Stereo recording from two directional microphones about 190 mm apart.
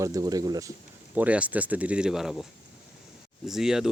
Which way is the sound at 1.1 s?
5° right (ahead or behind).